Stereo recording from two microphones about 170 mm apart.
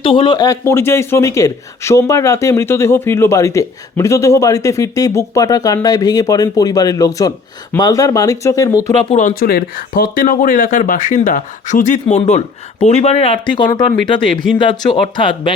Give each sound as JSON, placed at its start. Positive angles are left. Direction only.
{"t": 0.0, "sound": "speech", "side_deg": 30}
{"t": 9.0, "sound": "speech", "side_deg": 45}